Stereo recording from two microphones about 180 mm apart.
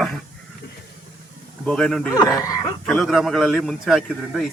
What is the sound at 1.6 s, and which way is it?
Speech, 5° left (ahead or behind).